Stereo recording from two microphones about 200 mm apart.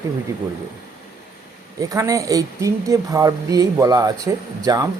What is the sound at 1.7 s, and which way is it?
Speech, 15° right (ahead or behind).